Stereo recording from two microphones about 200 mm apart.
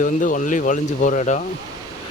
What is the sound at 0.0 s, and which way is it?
Speech, 40° left (ahead or behind).